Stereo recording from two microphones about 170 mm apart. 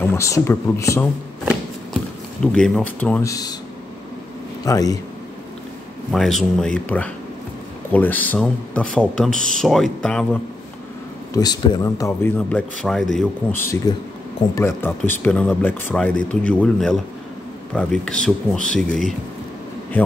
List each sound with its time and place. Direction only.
0.0 s speech: 15° left (ahead or behind)
2.4 s speech: 5° left (ahead or behind); by 3.5 s 20° left (ahead or behind)
4.6 s speech: 20° left (ahead or behind)
6.1 s speech: centre (ahead or behind)
11.3 s speech: 25° left (ahead or behind); by 19.1 s centre (ahead or behind)